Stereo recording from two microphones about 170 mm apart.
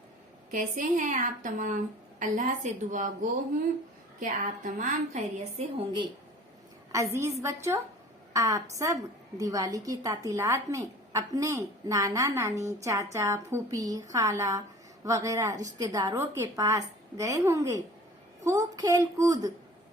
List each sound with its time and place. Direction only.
0.5 s a woman's voice: 50° right (ahead or behind)
6.9 s a woman's voice: 15° right (ahead or behind)